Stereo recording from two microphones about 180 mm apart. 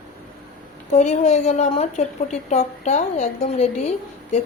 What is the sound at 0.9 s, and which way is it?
Speech, 40° left (ahead or behind).